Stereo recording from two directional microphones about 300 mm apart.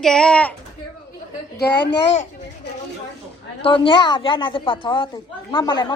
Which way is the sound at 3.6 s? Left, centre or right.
Centre.